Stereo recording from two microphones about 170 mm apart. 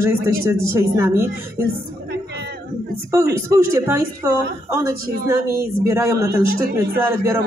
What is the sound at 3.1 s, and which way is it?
A woman's voice, 15° right (ahead or behind).